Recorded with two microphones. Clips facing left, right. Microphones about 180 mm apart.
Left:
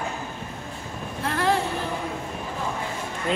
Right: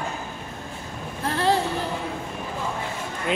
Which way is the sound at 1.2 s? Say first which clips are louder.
Right 1 dB; 30° right (ahead or behind).